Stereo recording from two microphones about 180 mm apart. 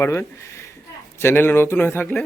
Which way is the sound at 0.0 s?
15° left (ahead or behind).